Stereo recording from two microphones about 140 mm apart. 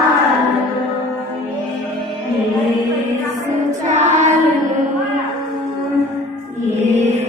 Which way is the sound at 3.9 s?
60° right (ahead or behind).